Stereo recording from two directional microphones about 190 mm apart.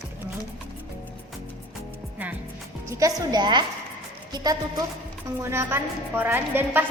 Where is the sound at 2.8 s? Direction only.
15° right (ahead or behind).